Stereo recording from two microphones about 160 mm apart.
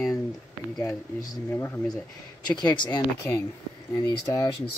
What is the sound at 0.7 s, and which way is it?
Speech, 20° left (ahead or behind).